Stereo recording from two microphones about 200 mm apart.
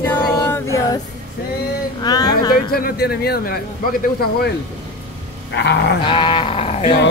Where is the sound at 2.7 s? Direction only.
50° left (ahead or behind).